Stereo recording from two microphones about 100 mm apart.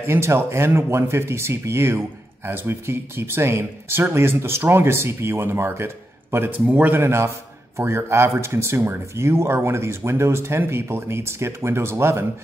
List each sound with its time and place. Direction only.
0.0 s speech: 25° right (ahead or behind)